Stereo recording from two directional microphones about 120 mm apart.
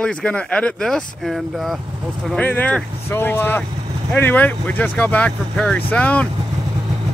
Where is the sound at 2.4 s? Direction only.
15° left (ahead or behind).